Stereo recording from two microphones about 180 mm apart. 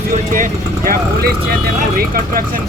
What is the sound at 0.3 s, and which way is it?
Speech, 50° right (ahead or behind).